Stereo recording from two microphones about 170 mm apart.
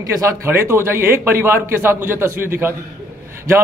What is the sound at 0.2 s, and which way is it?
A man's voice, 15° right (ahead or behind).